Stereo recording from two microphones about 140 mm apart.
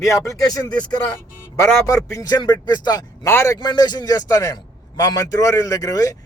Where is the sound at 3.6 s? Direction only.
30° left (ahead or behind).